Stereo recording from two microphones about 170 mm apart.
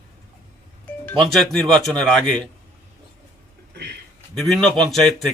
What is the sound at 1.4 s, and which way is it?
A man's voice, 5° left (ahead or behind).